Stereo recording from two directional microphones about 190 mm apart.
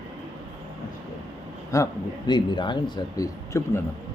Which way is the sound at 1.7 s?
20° left (ahead or behind).